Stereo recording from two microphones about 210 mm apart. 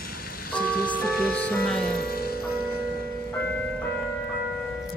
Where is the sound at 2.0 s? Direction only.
45° left (ahead or behind).